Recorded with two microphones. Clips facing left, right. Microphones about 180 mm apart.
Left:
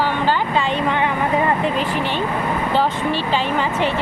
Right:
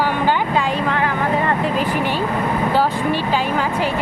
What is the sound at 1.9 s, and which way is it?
Speech, 10° right (ahead or behind).